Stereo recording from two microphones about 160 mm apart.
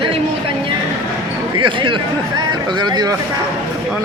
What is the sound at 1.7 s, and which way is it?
A man's voice, 30° right (ahead or behind).